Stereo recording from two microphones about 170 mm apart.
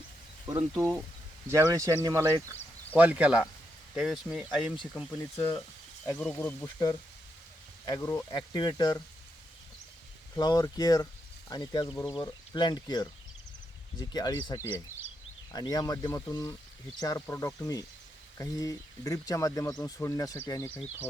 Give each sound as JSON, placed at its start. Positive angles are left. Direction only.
{"t": 0.4, "sound": "speech", "side_deg": -15}
{"t": 5.4, "sound": "speech", "side_deg": 15}
{"t": 10.3, "sound": "speech", "side_deg": 20}
{"t": 14.1, "sound": "speech", "side_deg": 25}
{"t": 20.7, "sound": "speech", "side_deg": -10}